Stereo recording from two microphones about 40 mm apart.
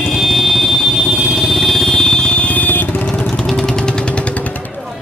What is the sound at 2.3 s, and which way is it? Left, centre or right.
Vehicle, left.